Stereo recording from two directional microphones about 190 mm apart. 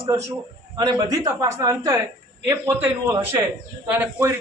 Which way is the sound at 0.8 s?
15° right (ahead or behind).